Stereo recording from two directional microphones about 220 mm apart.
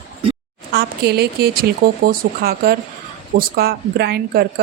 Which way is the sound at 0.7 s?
45° right (ahead or behind).